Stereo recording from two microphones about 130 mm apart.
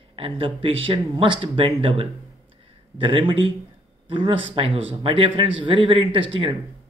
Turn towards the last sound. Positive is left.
turn(degrees=-40)  # may be behind; listen again after turning